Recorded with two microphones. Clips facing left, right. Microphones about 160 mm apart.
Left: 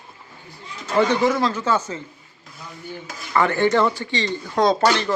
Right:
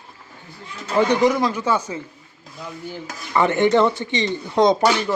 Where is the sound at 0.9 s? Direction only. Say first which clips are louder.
Right 1 dB; 15° right (ahead or behind).